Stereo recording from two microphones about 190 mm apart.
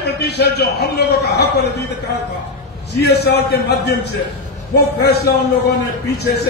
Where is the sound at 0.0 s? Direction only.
60° left (ahead or behind).